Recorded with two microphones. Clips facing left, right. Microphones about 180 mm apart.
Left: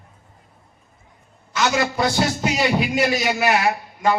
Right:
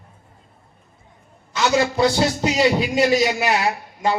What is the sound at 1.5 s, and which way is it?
A man's voice, 30° right (ahead or behind).